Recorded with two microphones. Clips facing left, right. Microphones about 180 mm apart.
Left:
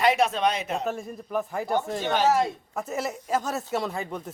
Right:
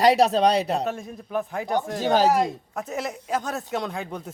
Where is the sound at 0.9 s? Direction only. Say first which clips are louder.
Even; centre (ahead or behind).